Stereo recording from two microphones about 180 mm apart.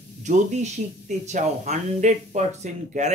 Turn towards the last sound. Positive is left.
turn(degrees=-40)  # may be behind; listen again after turning